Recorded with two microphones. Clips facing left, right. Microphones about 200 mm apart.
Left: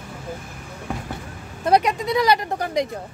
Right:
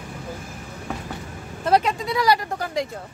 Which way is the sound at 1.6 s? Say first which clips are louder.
Left 2 dB; 15° left (ahead or behind).